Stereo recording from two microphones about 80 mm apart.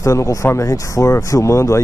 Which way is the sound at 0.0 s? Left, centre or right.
Left.